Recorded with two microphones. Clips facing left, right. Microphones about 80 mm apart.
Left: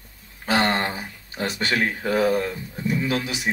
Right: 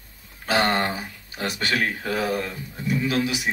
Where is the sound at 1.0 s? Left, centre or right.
Left.